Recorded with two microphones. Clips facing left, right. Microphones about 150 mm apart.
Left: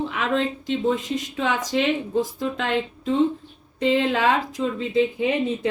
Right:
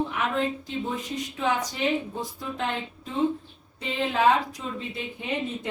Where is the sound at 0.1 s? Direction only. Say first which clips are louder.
Left 3 dB; 90° left.